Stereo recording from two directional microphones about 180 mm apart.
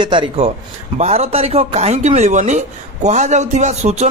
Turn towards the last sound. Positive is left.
turn(degrees=-40)  # may be behind; listen again after turning